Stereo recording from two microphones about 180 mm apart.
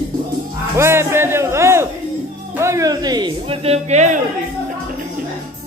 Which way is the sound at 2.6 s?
20° right (ahead or behind).